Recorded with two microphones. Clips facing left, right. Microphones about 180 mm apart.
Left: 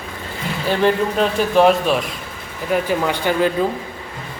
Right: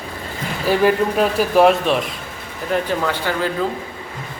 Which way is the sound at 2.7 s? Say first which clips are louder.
Left 1 dB; 15° left (ahead or behind).